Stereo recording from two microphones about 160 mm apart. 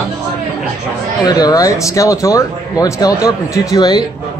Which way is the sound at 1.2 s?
25° left (ahead or behind).